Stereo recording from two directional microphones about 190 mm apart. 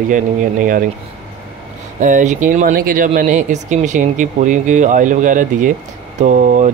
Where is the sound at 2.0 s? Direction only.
40° right (ahead or behind).